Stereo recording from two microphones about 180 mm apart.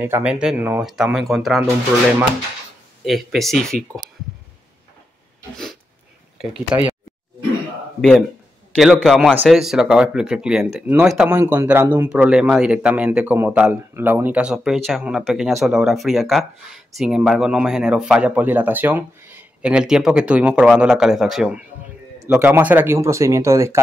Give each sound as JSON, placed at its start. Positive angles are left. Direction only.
{"t": 0.0, "sound": "speech", "side_deg": -10}
{"t": 3.1, "sound": "speech", "side_deg": 0}
{"t": 6.5, "sound": "speech", "side_deg": -5}
{"t": 8.7, "sound": "speech", "side_deg": 0}